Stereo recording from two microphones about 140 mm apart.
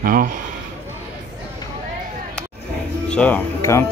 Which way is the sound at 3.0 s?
10° left (ahead or behind).